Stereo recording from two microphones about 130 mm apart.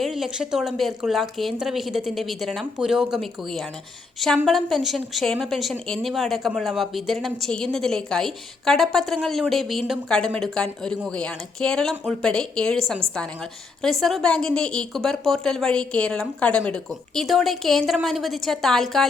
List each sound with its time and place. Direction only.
0.0 s a woman's voice: centre (ahead or behind)